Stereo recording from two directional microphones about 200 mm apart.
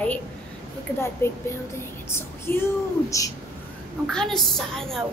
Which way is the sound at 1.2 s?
10° left (ahead or behind).